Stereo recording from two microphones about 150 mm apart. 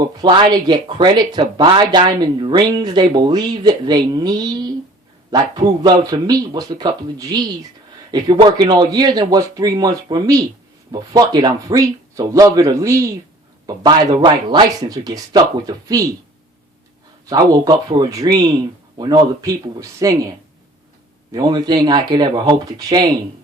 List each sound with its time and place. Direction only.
0.2 s speech: 30° right (ahead or behind)
17.2 s speech: 25° right (ahead or behind)
21.3 s speech: 30° right (ahead or behind)